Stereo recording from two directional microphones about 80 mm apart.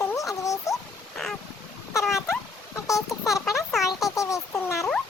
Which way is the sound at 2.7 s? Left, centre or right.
Left.